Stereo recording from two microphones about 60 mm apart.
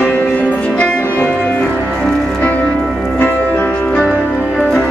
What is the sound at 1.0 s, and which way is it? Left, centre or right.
Music, left.